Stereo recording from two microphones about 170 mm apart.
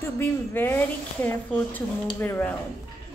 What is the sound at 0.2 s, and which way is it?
A woman's voice, 10° left (ahead or behind).